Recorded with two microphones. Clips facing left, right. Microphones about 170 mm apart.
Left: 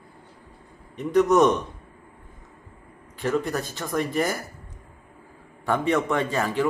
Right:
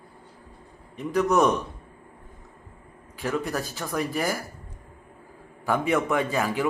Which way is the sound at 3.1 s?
5° right (ahead or behind).